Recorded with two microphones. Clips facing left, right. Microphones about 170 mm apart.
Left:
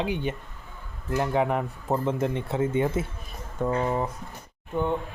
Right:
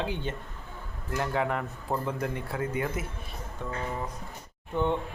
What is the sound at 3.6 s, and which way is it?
Speech, 50° left (ahead or behind).